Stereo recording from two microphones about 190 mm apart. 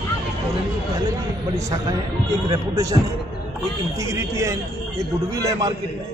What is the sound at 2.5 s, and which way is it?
Speech, 15° right (ahead or behind).